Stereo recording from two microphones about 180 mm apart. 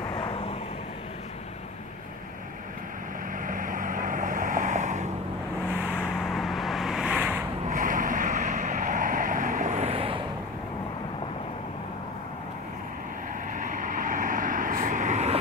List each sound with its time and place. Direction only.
0.1 s vehicle: 30° left (ahead or behind)
3.4 s vehicle: 50° right (ahead or behind)
5.7 s vehicle: 5° right (ahead or behind)
7.7 s vehicle: 50° right (ahead or behind); by 10.2 s 30° right (ahead or behind)
13.6 s vehicle: 45° right (ahead or behind)